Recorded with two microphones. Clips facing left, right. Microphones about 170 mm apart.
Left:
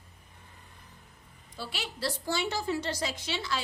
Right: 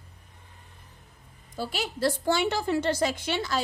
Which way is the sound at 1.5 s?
45° right (ahead or behind).